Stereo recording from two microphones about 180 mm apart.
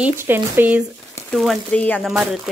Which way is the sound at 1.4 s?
5° left (ahead or behind).